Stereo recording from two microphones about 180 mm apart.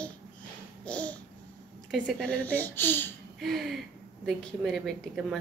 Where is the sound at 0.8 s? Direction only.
5° left (ahead or behind).